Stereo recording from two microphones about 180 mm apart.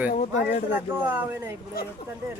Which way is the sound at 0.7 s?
10° right (ahead or behind).